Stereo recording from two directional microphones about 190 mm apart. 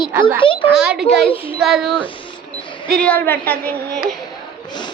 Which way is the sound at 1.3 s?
30° left (ahead or behind).